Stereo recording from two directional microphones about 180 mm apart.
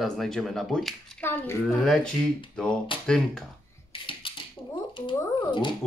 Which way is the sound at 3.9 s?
30° left (ahead or behind).